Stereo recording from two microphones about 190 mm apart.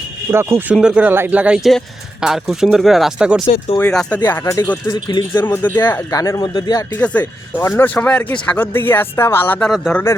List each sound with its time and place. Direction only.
0.3 s speech: 15° right (ahead or behind)
3.8 s speech: 5° left (ahead or behind); by 5.2 s 25° left (ahead or behind)
5.3 s speech: 10° left (ahead or behind)
6.9 s speech: 5° left (ahead or behind)